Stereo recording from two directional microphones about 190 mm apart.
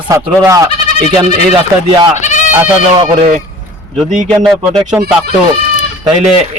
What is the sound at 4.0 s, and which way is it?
Speech, centre (ahead or behind).